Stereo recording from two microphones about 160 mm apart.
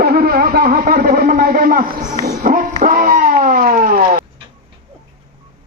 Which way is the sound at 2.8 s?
60° right (ahead or behind).